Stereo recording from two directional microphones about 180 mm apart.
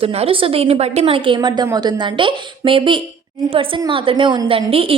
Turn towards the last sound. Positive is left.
turn(degrees=-30)  # may be behind; listen again after turning